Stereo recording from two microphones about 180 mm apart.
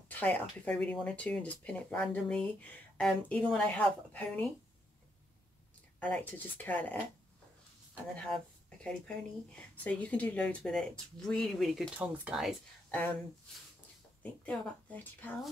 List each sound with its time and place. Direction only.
0.1 s speech: 10° left (ahead or behind)
5.9 s speech: 10° left (ahead or behind)
8.2 s speech: 5° left (ahead or behind)
14.4 s speech: 5° left (ahead or behind)